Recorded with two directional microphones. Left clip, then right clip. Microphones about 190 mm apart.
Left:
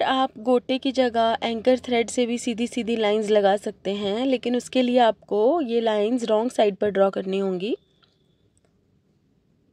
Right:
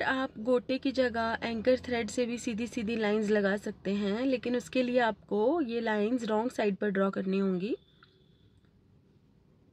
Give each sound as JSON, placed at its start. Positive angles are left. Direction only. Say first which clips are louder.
{"t": 0.0, "sound": "speech", "louder": "left 9 dB", "side_deg": 35}